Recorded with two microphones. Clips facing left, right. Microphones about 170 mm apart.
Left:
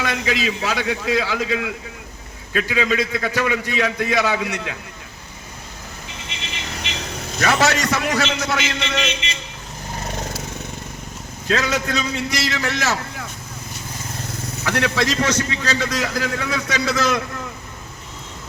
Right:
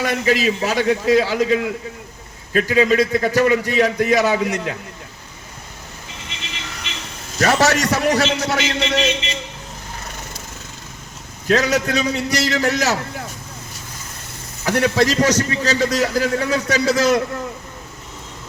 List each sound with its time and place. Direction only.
0.0 s a man's voice: 40° right (ahead or behind)
7.3 s a man's voice: 40° right (ahead or behind)
11.5 s a man's voice: 40° right (ahead or behind)
14.6 s a man's voice: 35° right (ahead or behind)